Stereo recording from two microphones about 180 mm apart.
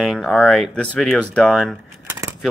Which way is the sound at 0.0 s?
Centre (ahead or behind).